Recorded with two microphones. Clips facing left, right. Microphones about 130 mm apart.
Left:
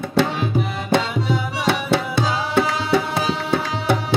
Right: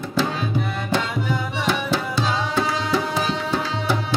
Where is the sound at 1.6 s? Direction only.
65° left (ahead or behind).